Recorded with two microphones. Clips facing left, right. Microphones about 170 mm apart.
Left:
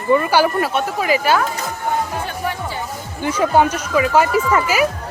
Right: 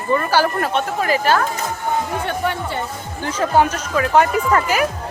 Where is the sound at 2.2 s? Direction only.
65° right (ahead or behind).